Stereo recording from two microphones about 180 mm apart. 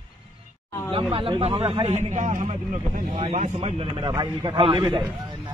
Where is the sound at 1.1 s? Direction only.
30° right (ahead or behind).